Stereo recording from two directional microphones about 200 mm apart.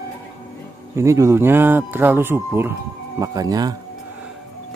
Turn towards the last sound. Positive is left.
turn(degrees=-20)  # may be behind; listen again after turning